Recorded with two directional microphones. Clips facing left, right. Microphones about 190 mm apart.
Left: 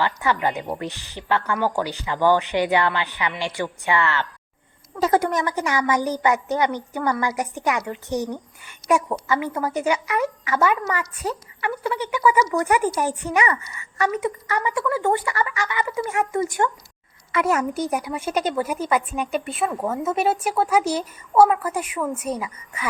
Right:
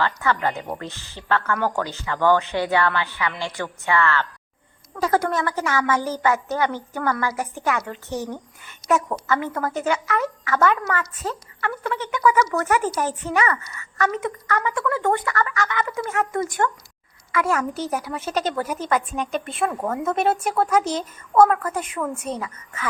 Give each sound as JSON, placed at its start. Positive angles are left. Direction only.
{"t": 0.0, "sound": "a woman's voice", "side_deg": 15}